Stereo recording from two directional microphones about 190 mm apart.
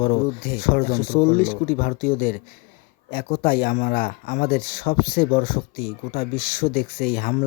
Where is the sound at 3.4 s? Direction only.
50° left (ahead or behind).